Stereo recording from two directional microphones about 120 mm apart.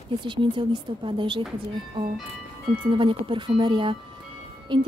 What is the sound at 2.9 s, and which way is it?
Speech, 45° right (ahead or behind).